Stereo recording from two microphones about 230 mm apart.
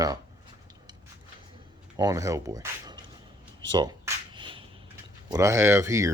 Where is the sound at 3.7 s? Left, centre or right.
Centre.